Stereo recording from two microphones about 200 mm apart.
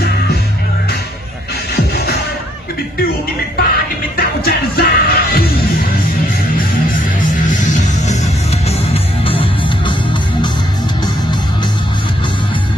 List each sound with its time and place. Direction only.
3.5 s music: 50° left (ahead or behind)
7.0 s music: 40° left (ahead or behind)
8.6 s music: 30° left (ahead or behind)